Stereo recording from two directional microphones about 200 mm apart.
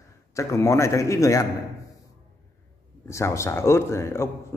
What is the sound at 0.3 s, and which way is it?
A man's voice, 15° left (ahead or behind).